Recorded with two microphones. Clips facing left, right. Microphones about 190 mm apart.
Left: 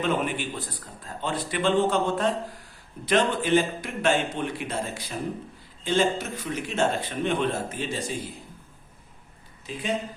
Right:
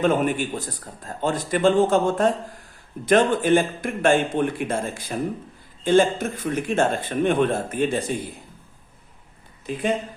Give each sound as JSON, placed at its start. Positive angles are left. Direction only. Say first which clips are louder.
{"t": 0.0, "sound": "speech", "louder": "right 6 dB", "side_deg": -45}
{"t": 9.6, "sound": "speech", "louder": "right 8 dB", "side_deg": -55}